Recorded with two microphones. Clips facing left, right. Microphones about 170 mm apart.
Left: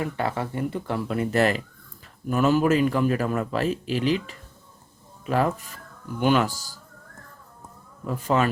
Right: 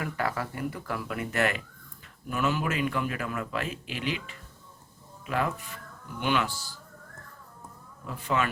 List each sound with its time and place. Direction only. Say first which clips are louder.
0.0 s a man's voice: left 4 dB; 25° left (ahead or behind); by 6.7 s 40° left (ahead or behind)
8.0 s a man's voice: left 6 dB; 40° left (ahead or behind)